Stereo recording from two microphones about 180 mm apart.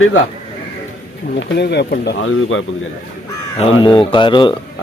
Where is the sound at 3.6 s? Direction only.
30° left (ahead or behind).